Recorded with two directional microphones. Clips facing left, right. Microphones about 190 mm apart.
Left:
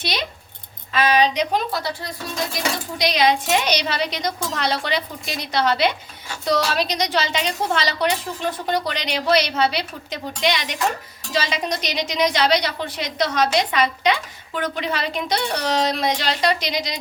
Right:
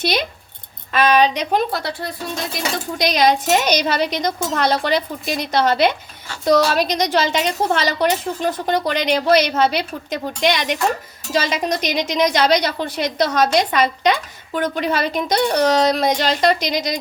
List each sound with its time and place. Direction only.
0.0 s a woman's voice: 50° right (ahead or behind)
3.0 s a woman's voice: 45° right (ahead or behind)